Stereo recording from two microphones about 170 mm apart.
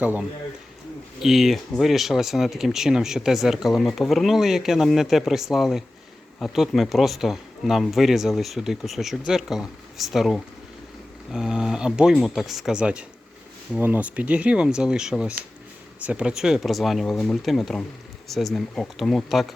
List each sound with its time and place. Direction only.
0.0 s a man's voice: 10° right (ahead or behind)